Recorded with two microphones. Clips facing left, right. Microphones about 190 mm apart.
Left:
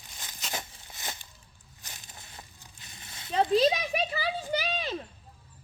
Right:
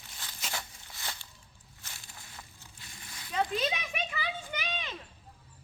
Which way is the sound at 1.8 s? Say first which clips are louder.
Left 2 dB; 20° left (ahead or behind).